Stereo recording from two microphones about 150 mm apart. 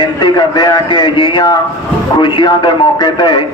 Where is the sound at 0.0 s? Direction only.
30° left (ahead or behind).